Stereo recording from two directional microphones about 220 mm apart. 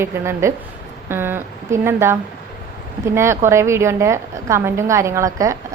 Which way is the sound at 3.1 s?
10° right (ahead or behind).